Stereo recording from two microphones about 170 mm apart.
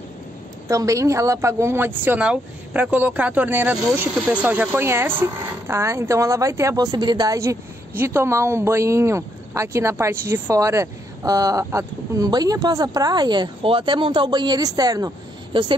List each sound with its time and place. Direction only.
0.7 s speech: 20° right (ahead or behind)